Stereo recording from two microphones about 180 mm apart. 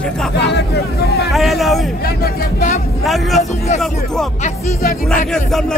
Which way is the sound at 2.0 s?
60° left (ahead or behind).